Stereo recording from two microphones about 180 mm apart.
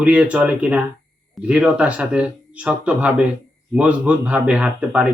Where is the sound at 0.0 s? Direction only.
5° right (ahead or behind).